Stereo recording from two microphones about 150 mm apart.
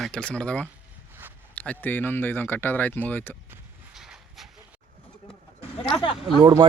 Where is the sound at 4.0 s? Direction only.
5° right (ahead or behind).